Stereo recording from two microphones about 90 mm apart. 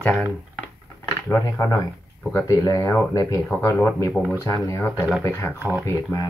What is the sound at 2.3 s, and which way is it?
Speech, 35° left (ahead or behind).